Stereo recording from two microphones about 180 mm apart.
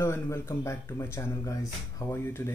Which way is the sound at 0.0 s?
15° left (ahead or behind).